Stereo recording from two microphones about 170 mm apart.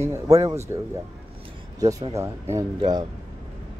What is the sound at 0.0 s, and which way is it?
Speech, 20° right (ahead or behind).